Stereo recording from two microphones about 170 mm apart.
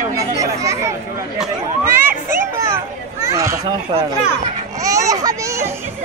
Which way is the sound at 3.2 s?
20° right (ahead or behind).